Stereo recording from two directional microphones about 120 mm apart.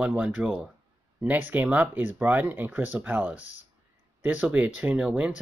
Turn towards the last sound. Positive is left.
turn(degrees=-10)  # may be behind; listen again after turning